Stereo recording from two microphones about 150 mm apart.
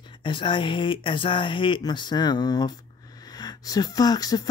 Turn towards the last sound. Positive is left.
turn(degrees=25)  # may be behind; listen again after turning